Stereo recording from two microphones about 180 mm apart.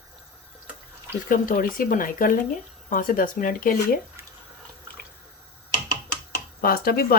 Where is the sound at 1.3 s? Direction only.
50° left (ahead or behind).